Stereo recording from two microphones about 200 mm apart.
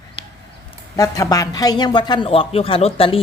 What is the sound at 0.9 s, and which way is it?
A man's voice, 15° left (ahead or behind).